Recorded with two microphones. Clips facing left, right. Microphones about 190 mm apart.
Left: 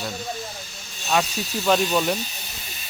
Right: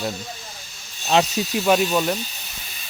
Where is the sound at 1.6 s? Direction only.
5° right (ahead or behind).